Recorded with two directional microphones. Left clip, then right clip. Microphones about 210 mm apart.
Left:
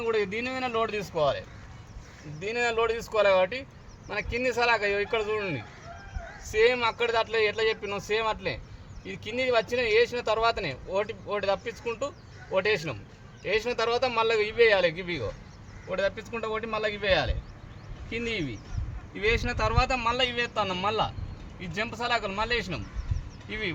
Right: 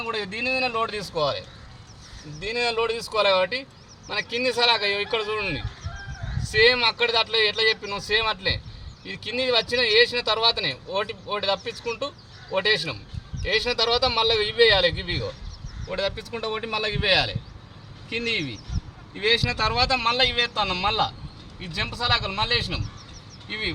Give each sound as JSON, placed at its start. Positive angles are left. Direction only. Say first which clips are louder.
{"t": 0.0, "sound": "speech", "louder": "even", "side_deg": -35}
{"t": 2.4, "sound": "speech", "louder": "right 2 dB", "side_deg": -10}